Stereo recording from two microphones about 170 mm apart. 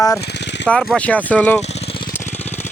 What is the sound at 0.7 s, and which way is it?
Speech, 5° left (ahead or behind).